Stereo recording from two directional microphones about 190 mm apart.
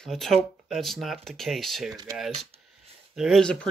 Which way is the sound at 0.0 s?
Centre (ahead or behind).